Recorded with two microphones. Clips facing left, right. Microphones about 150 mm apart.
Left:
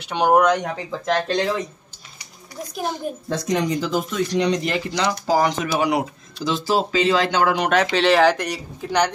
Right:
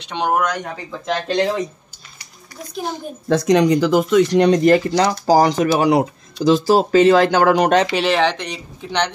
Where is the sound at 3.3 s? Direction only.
80° right; by 7.8 s 40° right (ahead or behind).